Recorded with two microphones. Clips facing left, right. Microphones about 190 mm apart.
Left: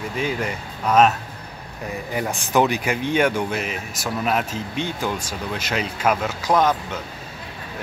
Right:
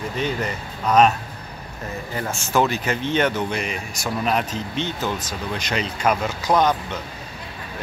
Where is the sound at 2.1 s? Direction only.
15° left (ahead or behind).